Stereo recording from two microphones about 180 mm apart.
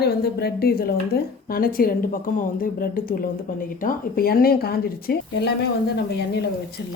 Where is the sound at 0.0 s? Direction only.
65° left (ahead or behind).